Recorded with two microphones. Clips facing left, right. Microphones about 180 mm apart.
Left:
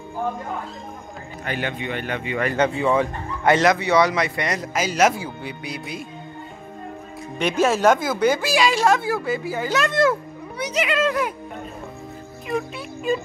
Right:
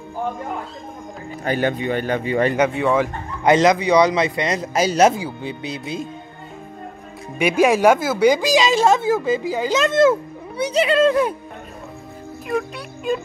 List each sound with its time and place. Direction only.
1.4 s a man's voice: 40° right (ahead or behind)
2.7 s speech: centre (ahead or behind)
3.4 s a man's voice: 20° right (ahead or behind)
4.7 s a man's voice: 30° right (ahead or behind)
7.3 s a man's voice: 10° right (ahead or behind); by 11.3 s 30° right (ahead or behind)
12.4 s speech: centre (ahead or behind)